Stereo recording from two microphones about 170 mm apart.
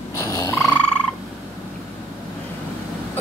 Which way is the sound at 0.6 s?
5° left (ahead or behind).